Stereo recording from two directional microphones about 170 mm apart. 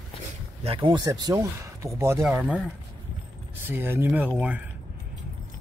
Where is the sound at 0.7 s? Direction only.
30° right (ahead or behind).